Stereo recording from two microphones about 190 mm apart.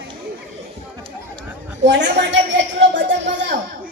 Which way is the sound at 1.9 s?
70° right (ahead or behind).